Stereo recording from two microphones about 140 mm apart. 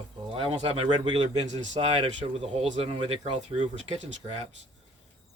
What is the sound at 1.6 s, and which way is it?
Speech, 50° right (ahead or behind).